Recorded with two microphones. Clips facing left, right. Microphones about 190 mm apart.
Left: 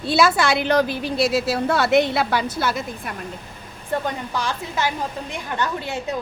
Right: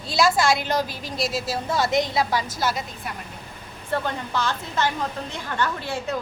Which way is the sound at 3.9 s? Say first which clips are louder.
Left 1 dB; 15° left (ahead or behind).